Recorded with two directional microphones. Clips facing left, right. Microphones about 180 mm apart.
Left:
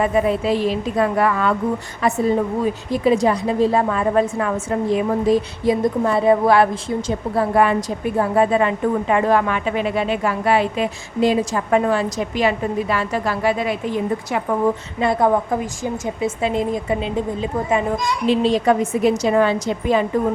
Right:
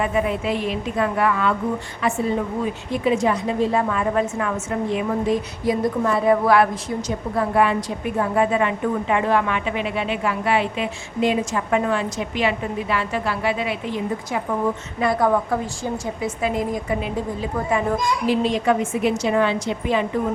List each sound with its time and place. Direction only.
0.0 s a woman's voice: 35° left (ahead or behind)
5.6 s a woman's voice: 25° left (ahead or behind)
7.3 s a woman's voice: 40° left (ahead or behind)
14.9 s a woman's voice: 25° left (ahead or behind)
18.3 s a woman's voice: 30° left (ahead or behind)